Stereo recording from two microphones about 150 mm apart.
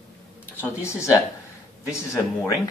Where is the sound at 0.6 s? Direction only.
20° left (ahead or behind).